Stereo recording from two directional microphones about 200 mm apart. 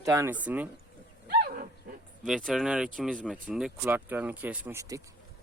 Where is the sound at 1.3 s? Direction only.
50° right (ahead or behind).